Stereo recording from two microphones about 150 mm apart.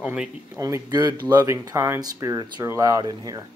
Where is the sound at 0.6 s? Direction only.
20° right (ahead or behind).